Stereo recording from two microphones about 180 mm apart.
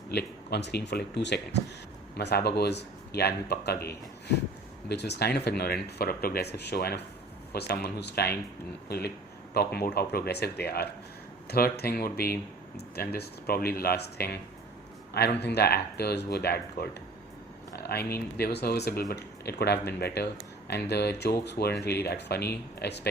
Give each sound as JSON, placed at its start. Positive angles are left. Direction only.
{"t": 0.1, "sound": "speech", "side_deg": 65}
{"t": 4.9, "sound": "speech", "side_deg": 65}